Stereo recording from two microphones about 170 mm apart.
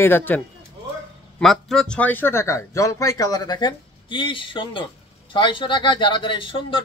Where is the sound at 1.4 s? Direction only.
Centre (ahead or behind).